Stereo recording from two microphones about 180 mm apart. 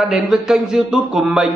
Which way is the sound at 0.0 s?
5° right (ahead or behind).